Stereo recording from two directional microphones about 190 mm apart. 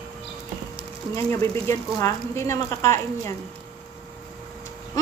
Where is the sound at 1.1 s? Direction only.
15° left (ahead or behind).